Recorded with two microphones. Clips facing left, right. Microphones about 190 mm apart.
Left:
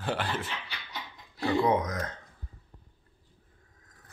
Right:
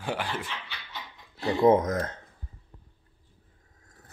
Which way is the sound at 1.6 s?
45° right (ahead or behind).